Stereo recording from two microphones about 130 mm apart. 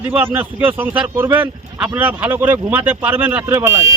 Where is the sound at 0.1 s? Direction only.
15° right (ahead or behind).